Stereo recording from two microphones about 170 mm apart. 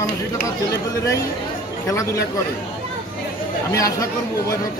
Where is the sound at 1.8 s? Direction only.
20° left (ahead or behind).